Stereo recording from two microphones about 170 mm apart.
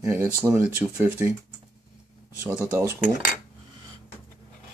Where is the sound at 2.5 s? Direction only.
10° right (ahead or behind).